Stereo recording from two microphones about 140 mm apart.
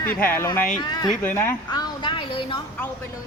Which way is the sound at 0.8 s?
30° left (ahead or behind).